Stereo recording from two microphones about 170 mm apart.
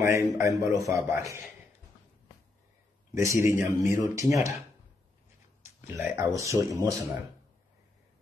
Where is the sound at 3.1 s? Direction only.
15° right (ahead or behind).